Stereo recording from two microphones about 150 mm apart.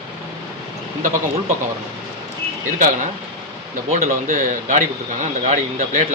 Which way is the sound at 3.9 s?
45° right (ahead or behind).